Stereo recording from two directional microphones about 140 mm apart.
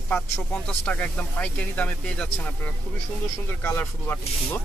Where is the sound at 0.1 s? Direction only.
10° left (ahead or behind).